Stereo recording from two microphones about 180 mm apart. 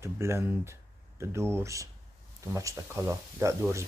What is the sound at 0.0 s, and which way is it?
Speech, 15° right (ahead or behind).